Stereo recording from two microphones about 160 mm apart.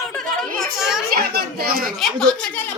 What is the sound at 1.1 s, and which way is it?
Speech, 70° right (ahead or behind).